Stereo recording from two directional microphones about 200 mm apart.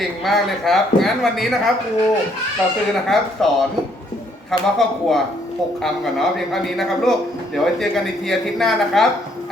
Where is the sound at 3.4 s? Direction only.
Centre (ahead or behind).